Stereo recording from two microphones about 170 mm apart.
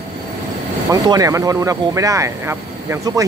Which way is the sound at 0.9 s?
20° right (ahead or behind).